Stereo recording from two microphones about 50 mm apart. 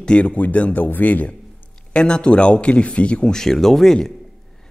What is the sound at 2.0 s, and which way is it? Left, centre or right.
A man's voice, centre.